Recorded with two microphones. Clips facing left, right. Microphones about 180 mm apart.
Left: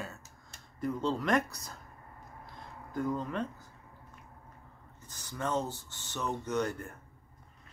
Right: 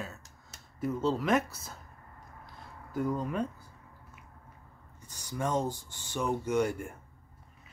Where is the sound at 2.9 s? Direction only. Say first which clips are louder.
Right 2 dB; 10° right (ahead or behind).